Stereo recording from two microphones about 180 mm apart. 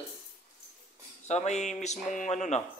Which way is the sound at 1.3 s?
40° left (ahead or behind).